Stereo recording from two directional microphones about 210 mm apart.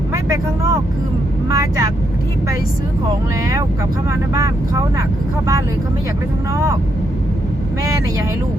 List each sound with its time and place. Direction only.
0.1 s speech: 15° right (ahead or behind)
4.4 s speech: 15° right (ahead or behind)